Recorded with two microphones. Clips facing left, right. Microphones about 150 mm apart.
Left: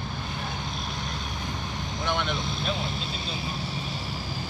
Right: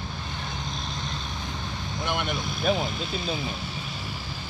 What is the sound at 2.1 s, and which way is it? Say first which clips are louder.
Speech: left 1 dB; 10° right (ahead or behind).